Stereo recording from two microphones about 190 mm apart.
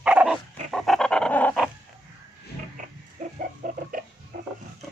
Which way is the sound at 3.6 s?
45° right (ahead or behind).